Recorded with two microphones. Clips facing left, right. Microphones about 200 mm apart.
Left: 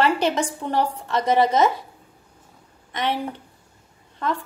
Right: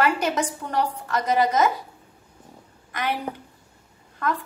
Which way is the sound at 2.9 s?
25° left (ahead or behind).